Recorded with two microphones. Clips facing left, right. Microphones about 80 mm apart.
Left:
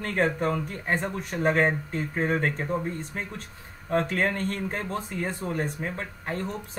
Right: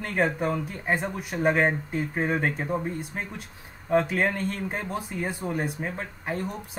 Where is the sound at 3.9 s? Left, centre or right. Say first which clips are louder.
Right 2 dB; centre.